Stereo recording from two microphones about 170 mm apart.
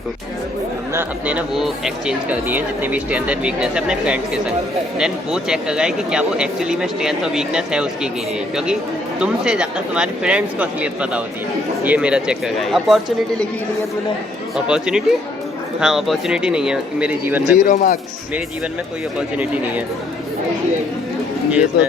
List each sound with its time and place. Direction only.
0.9 s speech: 10° right (ahead or behind)
14.5 s speech: 5° right (ahead or behind)
17.6 s speech: 50° left (ahead or behind)
19.4 s speech: 10° right (ahead or behind)
21.5 s speech: 10° right (ahead or behind)